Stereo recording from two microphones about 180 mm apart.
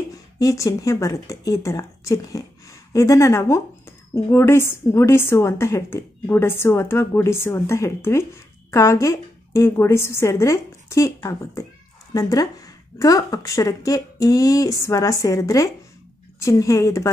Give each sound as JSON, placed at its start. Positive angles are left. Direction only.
{"t": 0.4, "sound": "a woman's voice", "side_deg": 20}